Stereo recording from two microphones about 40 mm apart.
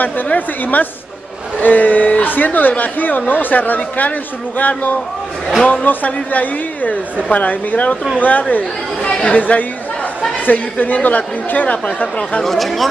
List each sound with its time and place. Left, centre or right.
0.0 s speech: left
12.4 s speech: centre